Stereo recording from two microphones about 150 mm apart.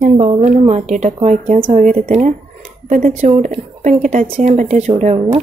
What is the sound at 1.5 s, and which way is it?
Speech, 35° right (ahead or behind).